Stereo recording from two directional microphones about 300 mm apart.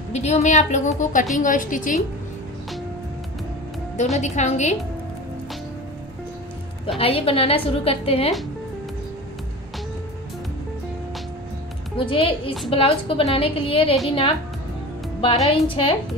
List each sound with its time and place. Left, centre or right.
0.1 s a woman's voice: left
3.9 s a woman's voice: left
7.0 s a woman's voice: centre
12.0 s a woman's voice: centre
15.1 s a woman's voice: centre